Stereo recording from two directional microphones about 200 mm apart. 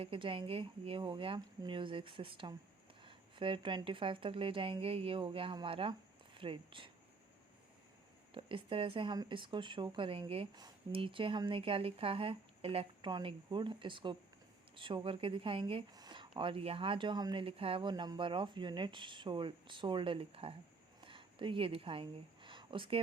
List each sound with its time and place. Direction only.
0.0 s speech: 25° right (ahead or behind)
8.3 s speech: 25° right (ahead or behind)
21.0 s a sound: 25° right (ahead or behind)